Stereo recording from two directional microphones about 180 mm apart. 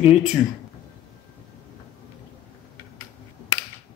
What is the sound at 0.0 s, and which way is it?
Speech, 5° right (ahead or behind).